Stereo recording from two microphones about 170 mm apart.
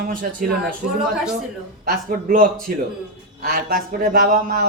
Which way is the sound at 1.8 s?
55° right (ahead or behind).